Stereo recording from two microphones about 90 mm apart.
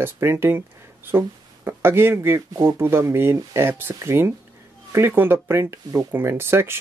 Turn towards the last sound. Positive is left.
turn(degrees=-25)  # may be behind; listen again after turning